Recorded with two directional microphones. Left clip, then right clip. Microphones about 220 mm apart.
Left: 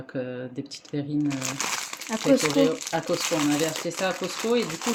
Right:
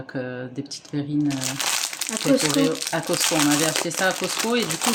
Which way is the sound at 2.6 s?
5° right (ahead or behind).